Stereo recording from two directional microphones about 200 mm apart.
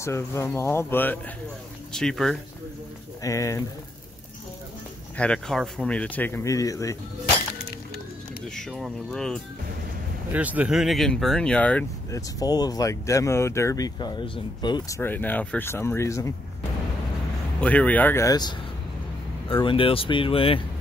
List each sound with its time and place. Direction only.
0.0 s speech: 15° left (ahead or behind)
3.2 s speech: 15° left (ahead or behind)
5.1 s speech: 5° left (ahead or behind)
8.5 s speech: centre (ahead or behind)
10.3 s speech: 5° right (ahead or behind); by 15.0 s 20° left (ahead or behind)
15.0 s speech: 10° left (ahead or behind)
17.6 s speech: 5° left (ahead or behind); by 20.6 s 25° left (ahead or behind)